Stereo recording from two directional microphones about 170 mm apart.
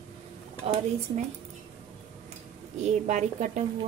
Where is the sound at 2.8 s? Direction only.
45° right (ahead or behind).